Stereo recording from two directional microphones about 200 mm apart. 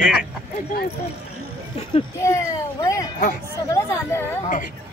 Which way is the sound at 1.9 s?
15° left (ahead or behind).